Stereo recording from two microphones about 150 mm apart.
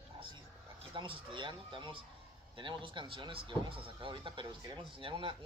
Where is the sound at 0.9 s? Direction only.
35° right (ahead or behind).